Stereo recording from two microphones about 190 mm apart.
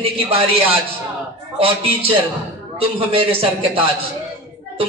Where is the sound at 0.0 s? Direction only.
30° right (ahead or behind).